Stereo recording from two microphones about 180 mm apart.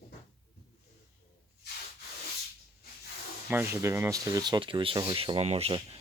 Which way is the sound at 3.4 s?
10° right (ahead or behind).